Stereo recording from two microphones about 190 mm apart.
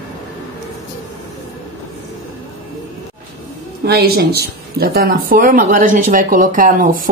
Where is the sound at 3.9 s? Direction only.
55° right (ahead or behind).